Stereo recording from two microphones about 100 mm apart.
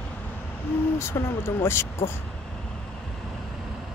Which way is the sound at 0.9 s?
25° left (ahead or behind).